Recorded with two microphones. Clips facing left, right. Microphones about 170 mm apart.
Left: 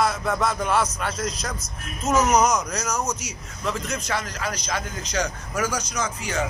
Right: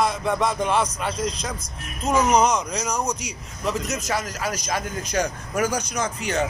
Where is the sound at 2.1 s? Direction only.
30° right (ahead or behind).